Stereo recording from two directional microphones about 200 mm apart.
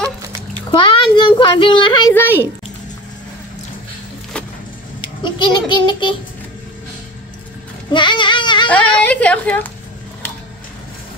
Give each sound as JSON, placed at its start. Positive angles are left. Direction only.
{"t": 0.7, "sound": "a child's voice", "side_deg": 25}
{"t": 5.0, "sound": "a child's voice", "side_deg": 20}
{"t": 7.9, "sound": "goat", "side_deg": 25}
{"t": 8.6, "sound": "a woman's voice", "side_deg": 5}